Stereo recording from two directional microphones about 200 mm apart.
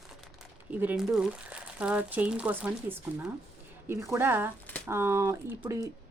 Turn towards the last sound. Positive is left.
turn(degrees=-15)  # may be behind; listen again after turning